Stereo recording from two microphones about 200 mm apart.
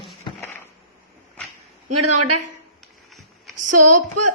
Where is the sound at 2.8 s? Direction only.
Centre (ahead or behind).